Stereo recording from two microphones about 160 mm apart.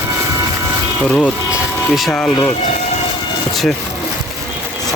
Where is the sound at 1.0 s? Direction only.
5° left (ahead or behind).